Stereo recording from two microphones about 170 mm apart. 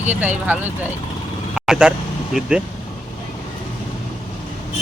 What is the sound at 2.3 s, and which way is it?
Speech, centre (ahead or behind).